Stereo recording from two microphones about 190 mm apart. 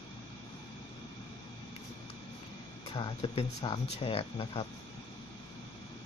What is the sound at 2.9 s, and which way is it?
Speech, 25° left (ahead or behind).